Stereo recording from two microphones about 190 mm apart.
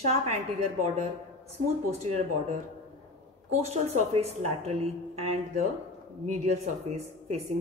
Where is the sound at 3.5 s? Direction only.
35° right (ahead or behind).